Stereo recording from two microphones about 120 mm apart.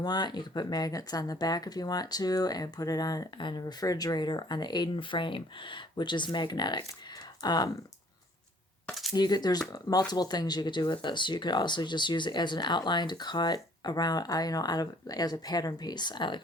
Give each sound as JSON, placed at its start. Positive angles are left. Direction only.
{"t": 0.0, "sound": "speech", "side_deg": 35}
{"t": 9.1, "sound": "speech", "side_deg": 35}